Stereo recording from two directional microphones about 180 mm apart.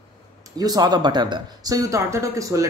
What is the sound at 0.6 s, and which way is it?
Speech, 20° right (ahead or behind).